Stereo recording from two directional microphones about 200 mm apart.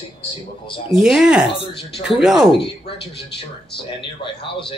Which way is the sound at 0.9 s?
5° right (ahead or behind).